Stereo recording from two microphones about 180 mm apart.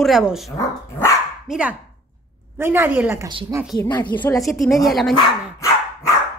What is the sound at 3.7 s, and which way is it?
Speech, 25° left (ahead or behind).